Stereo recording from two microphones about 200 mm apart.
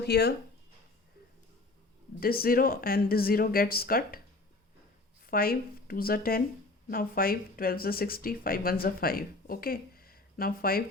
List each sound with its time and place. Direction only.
0.0 s speech: 55° left (ahead or behind)
2.2 s speech: 50° left (ahead or behind)
5.2 s speech: 45° left (ahead or behind)